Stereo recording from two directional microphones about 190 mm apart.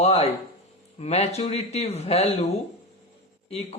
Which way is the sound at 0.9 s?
35° left (ahead or behind).